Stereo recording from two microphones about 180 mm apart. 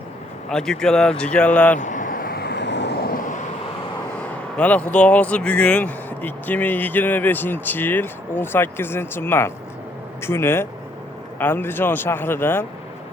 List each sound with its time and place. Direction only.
0.5 s speech: 5° left (ahead or behind)
1.8 s vehicle: 45° left (ahead or behind); by 3.1 s 70° left (ahead or behind)
4.5 s speech: 5° left (ahead or behind)